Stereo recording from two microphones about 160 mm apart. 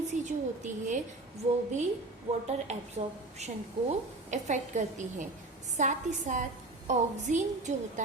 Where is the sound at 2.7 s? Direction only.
45° right (ahead or behind).